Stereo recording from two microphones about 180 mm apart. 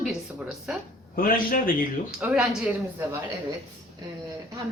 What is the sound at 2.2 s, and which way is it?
Speech, 5° right (ahead or behind).